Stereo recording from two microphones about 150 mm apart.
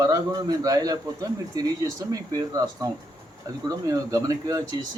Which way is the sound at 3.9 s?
20° right (ahead or behind).